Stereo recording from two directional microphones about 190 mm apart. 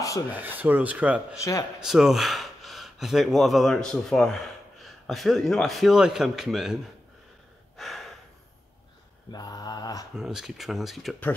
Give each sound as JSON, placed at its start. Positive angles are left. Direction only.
{"t": 0.3, "sound": "speech", "side_deg": -10}
{"t": 1.3, "sound": "speech", "side_deg": 15}
{"t": 1.8, "sound": "speech", "side_deg": -5}
{"t": 7.7, "sound": "gasp", "side_deg": 0}
{"t": 9.3, "sound": "mantra", "side_deg": 20}
{"t": 10.1, "sound": "speech", "side_deg": -5}